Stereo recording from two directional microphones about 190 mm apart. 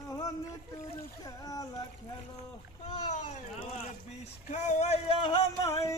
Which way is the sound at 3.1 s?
35° left (ahead or behind).